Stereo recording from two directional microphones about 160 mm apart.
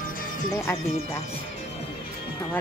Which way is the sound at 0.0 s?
60° left (ahead or behind).